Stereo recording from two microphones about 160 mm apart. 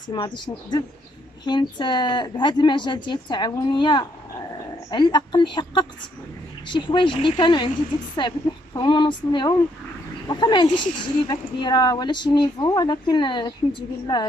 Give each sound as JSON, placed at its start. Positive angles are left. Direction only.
{"t": 0.1, "sound": "speech", "side_deg": 25}